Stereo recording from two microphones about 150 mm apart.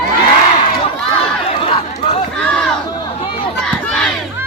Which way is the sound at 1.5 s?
35° left (ahead or behind).